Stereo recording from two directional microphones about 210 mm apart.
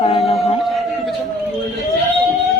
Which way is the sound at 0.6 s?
Centre (ahead or behind).